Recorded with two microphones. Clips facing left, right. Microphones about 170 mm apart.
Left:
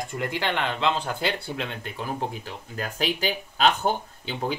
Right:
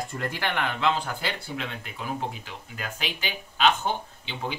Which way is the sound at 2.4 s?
40° left (ahead or behind).